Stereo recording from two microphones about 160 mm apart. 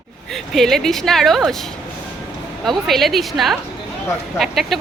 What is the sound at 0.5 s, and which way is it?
Speech, centre (ahead or behind).